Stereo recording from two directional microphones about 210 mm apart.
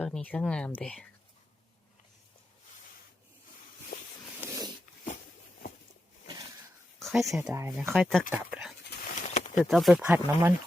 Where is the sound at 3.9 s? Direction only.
45° left (ahead or behind).